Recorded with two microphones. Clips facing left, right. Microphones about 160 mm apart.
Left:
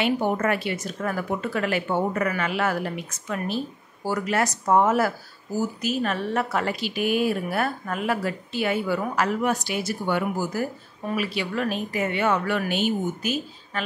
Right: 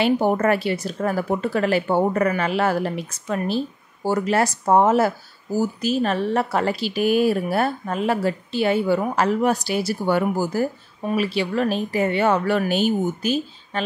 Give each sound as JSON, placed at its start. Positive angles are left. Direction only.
{"t": 0.0, "sound": "speech", "side_deg": -35}